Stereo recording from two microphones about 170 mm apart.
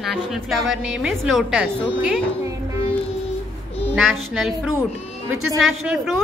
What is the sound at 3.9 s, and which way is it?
A woman's voice, centre (ahead or behind).